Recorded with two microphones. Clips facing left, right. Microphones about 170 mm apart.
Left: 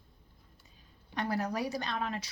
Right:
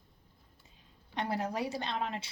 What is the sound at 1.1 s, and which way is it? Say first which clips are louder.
Speech: left 1 dB; 25° right (ahead or behind).